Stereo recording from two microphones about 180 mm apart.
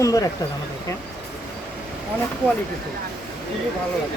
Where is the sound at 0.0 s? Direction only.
20° left (ahead or behind).